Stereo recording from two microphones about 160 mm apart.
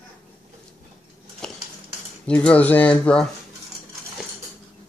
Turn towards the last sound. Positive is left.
turn(degrees=5)  # may be behind; listen again after turning